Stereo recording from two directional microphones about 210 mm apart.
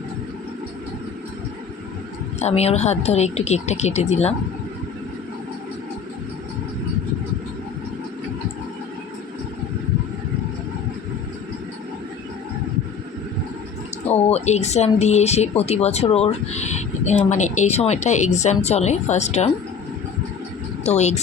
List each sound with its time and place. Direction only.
2.4 s speech: 30° left (ahead or behind)
14.1 s speech: 30° left (ahead or behind)
20.8 s speech: 30° left (ahead or behind)